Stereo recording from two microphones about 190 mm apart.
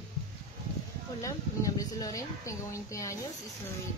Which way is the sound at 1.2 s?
15° left (ahead or behind).